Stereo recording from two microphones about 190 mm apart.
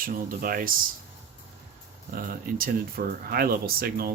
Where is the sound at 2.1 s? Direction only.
45° right (ahead or behind).